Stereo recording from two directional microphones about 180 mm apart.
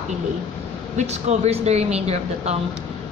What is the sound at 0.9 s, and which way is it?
A woman's voice, 35° right (ahead or behind).